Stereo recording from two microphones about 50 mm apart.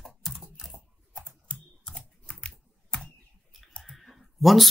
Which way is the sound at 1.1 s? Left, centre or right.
Centre.